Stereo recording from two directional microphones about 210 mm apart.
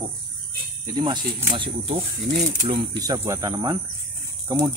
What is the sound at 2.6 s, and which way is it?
Speech, 20° right (ahead or behind).